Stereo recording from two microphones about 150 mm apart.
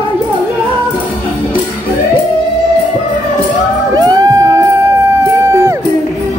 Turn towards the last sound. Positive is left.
turn(degrees=-20)  # may be behind; listen again after turning